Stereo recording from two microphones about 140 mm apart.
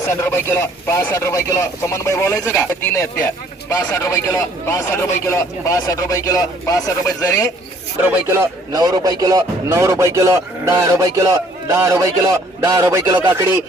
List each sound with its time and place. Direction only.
0.1 s speech: 20° left (ahead or behind)
8.0 s speech: 20° right (ahead or behind)